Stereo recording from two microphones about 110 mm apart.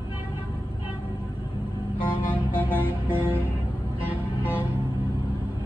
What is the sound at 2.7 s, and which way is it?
Music, 20° right (ahead or behind).